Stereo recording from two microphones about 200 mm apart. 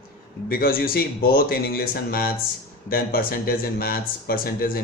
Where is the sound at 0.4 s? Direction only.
50° left (ahead or behind).